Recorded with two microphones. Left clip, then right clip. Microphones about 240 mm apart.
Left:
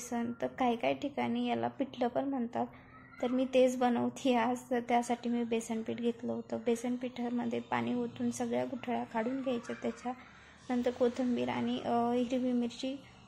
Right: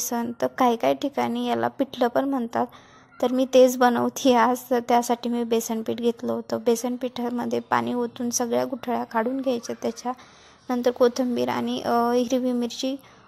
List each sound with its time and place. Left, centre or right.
0.1 s a woman's voice: right